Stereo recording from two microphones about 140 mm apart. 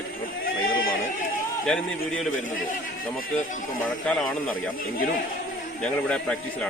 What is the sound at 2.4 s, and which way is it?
A man's voice, 70° left (ahead or behind).